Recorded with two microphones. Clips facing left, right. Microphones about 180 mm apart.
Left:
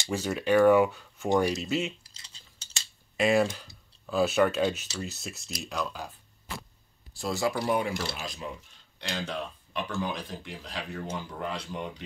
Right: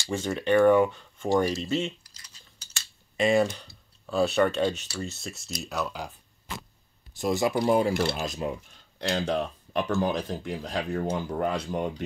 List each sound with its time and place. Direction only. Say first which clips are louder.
0.1 s speech: right 1 dB; 5° left (ahead or behind)
2.0 s typing: even; 25° left (ahead or behind)
3.2 s speech: right 1 dB; centre (ahead or behind)
7.2 s speech: right 4 dB; 20° right (ahead or behind)
7.9 s speech: right 7 dB; 60° right (ahead or behind)
8.2 s speech: right 7 dB; 45° right (ahead or behind)